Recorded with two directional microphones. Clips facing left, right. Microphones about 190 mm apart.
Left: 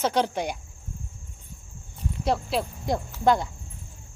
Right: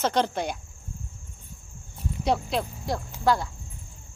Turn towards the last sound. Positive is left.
turn(degrees=20)  # may be behind; listen again after turning